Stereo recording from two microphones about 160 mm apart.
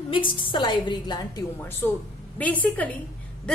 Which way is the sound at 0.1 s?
30° left (ahead or behind).